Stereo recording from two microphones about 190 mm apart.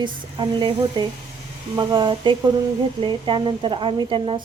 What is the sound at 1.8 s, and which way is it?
A woman's voice, 25° right (ahead or behind).